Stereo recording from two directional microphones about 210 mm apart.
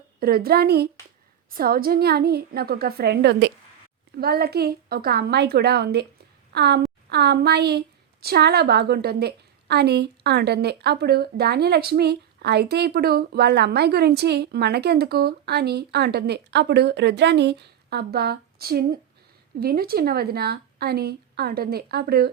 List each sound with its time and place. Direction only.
0.2 s a woman's voice: 45° right (ahead or behind)